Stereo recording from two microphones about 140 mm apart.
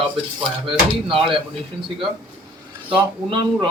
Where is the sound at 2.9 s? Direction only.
30° right (ahead or behind).